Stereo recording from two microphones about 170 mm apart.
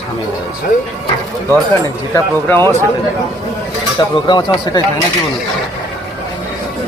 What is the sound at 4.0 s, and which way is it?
Speech, 25° left (ahead or behind).